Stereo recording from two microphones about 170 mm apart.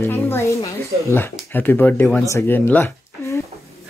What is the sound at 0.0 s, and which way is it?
Music, 15° left (ahead or behind).